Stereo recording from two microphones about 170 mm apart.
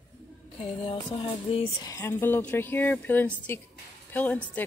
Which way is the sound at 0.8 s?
30° left (ahead or behind).